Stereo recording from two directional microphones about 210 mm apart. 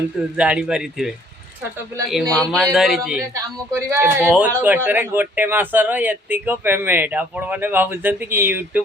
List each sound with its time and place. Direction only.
0.3 s a man's voice: 5° right (ahead or behind)
2.3 s a man's voice: centre (ahead or behind)
3.3 s speech: 15° right (ahead or behind)